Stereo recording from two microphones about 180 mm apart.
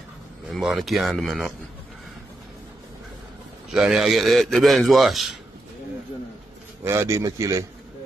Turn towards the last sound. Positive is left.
turn(degrees=-20)  # may be behind; listen again after turning